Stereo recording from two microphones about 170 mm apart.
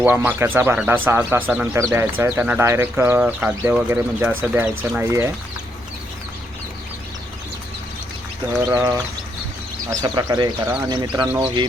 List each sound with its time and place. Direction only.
0.0 s speech: 10° right (ahead or behind)
8.7 s speech: 20° right (ahead or behind)
10.0 s speech: 20° right (ahead or behind)